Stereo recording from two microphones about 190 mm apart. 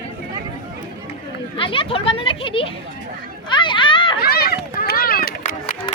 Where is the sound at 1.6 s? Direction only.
30° left (ahead or behind).